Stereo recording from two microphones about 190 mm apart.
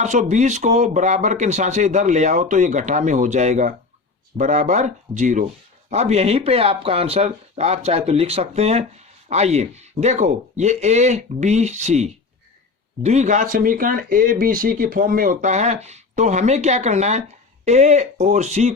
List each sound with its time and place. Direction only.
0.0 s speech: 40° right (ahead or behind)